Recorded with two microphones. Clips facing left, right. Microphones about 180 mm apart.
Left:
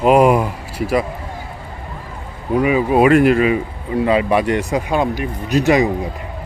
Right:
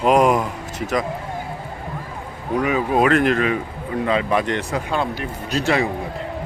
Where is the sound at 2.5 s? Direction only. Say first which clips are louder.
Left 5 dB; 10° left (ahead or behind).